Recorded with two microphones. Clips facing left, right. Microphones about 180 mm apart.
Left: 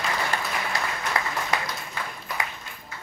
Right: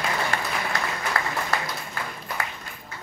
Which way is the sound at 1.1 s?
15° left (ahead or behind).